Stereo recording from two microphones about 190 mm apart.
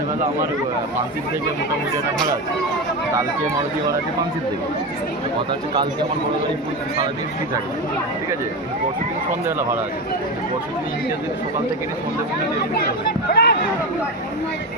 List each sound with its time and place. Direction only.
13.3 s speech: 60° left (ahead or behind)